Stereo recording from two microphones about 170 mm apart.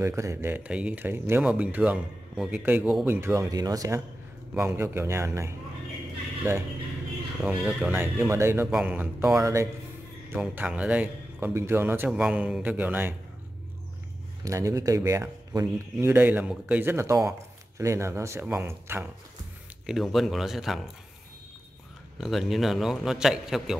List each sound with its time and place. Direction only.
0.0 s speech: 15° right (ahead or behind)
3.2 s speech: 15° right (ahead or behind)
7.4 s speech: 5° right (ahead or behind)
14.4 s speech: 20° right (ahead or behind)
19.9 s a man's voice: centre (ahead or behind)
22.2 s a man's voice: centre (ahead or behind)